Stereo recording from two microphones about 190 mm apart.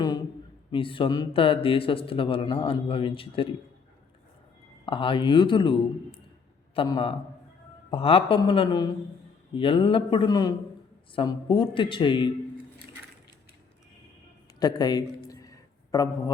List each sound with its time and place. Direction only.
0.7 s speech: 25° left (ahead or behind)
4.9 s speech: 25° left (ahead or behind)
14.6 s a sound: 20° left (ahead or behind)